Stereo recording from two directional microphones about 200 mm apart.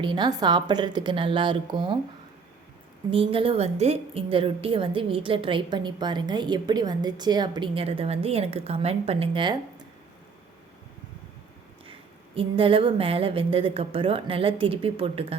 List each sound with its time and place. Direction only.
0.0 s a woman's voice: 20° right (ahead or behind)
3.1 s a woman's voice: 25° right (ahead or behind)
11.9 s a woman's voice: 25° right (ahead or behind)